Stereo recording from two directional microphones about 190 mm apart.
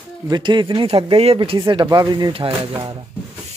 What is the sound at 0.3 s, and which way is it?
Speech, 25° right (ahead or behind).